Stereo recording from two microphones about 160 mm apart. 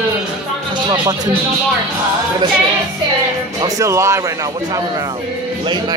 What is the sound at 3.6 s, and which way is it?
Speech, 20° right (ahead or behind).